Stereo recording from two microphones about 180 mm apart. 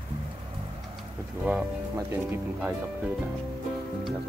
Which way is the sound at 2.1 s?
10° right (ahead or behind).